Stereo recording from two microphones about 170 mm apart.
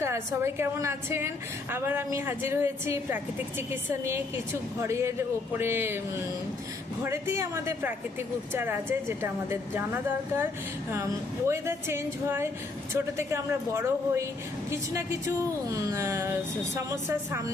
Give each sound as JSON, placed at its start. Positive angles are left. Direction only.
{"t": 0.0, "sound": "a woman's voice", "side_deg": -15}
{"t": 11.4, "sound": "a woman's voice", "side_deg": -15}